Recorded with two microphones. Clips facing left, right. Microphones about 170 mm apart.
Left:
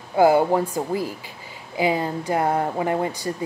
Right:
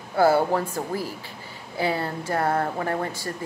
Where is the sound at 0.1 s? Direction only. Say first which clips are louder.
Left 3 dB; 15° left (ahead or behind).